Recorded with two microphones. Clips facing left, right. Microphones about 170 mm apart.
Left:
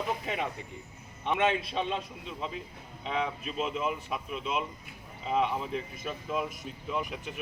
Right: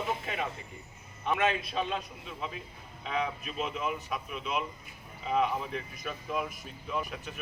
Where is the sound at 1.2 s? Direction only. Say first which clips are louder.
Left 1 dB; 25° left (ahead or behind).